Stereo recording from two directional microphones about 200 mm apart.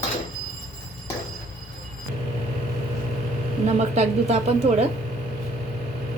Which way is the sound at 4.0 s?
35° right (ahead or behind).